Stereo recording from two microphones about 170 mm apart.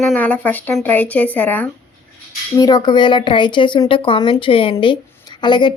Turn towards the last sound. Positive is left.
turn(degrees=25)  # may be behind; listen again after turning